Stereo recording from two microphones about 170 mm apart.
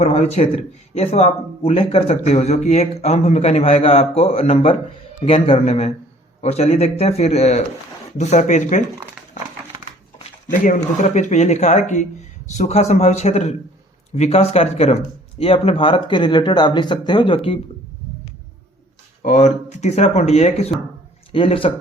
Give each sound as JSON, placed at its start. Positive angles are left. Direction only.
{"t": 0.0, "sound": "speech", "side_deg": 40}
{"t": 11.1, "sound": "speech", "side_deg": 45}
{"t": 19.2, "sound": "speech", "side_deg": 45}